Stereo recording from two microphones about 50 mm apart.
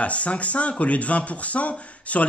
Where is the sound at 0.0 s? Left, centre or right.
Left.